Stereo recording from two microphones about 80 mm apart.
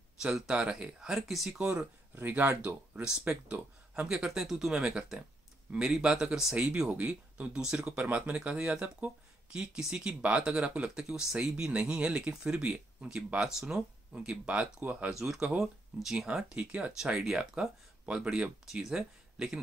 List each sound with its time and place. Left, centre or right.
0.2 s speech: centre
2.1 s speech: right; by 19.6 s centre